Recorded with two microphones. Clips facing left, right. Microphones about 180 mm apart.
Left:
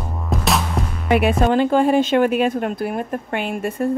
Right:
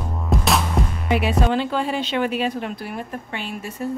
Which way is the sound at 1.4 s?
50° left (ahead or behind).